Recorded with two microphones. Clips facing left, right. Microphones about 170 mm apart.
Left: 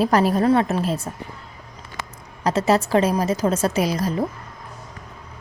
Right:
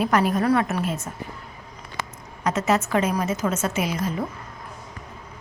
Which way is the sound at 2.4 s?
30° left (ahead or behind).